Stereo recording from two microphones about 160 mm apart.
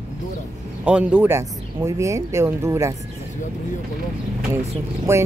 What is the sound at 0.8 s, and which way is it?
Speech, 5° right (ahead or behind).